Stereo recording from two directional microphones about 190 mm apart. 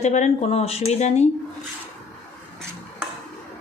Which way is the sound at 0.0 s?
35° left (ahead or behind).